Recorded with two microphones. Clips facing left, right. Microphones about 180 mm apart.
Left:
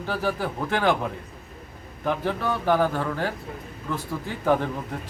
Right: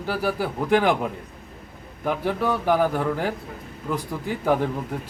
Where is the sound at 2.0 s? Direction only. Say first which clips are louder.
Right 2 dB; 10° right (ahead or behind).